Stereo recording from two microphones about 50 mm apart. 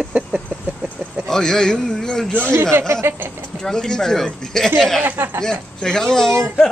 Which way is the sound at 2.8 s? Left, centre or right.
Right.